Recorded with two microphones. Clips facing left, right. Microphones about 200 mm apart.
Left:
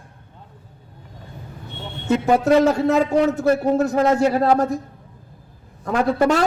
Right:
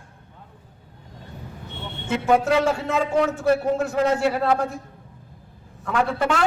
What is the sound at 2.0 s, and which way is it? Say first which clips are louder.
A man's voice: left 3 dB; 40° left (ahead or behind).